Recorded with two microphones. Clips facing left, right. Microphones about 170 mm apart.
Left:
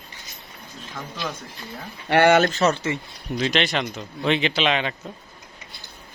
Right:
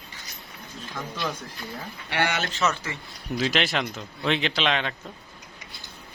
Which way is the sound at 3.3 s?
5° right (ahead or behind).